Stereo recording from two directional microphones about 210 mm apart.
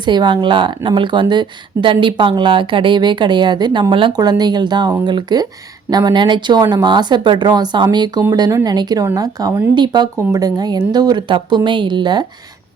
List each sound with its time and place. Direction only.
0.0 s speech: 20° right (ahead or behind)